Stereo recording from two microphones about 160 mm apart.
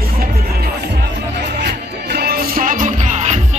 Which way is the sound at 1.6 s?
90° right.